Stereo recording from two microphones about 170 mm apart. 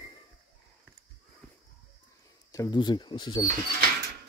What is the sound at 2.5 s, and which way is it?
Speech, 20° left (ahead or behind).